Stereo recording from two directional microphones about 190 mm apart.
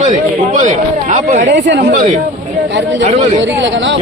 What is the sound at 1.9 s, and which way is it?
Speech, 40° right (ahead or behind).